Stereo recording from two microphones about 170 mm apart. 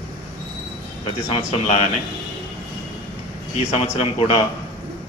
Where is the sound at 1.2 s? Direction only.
35° left (ahead or behind).